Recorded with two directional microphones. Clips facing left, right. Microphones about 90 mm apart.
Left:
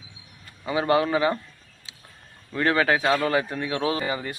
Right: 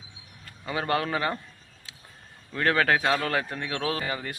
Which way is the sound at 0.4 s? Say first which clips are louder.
Left 6 dB; 5° left (ahead or behind).